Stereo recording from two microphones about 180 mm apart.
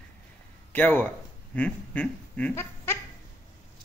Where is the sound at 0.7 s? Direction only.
10° left (ahead or behind).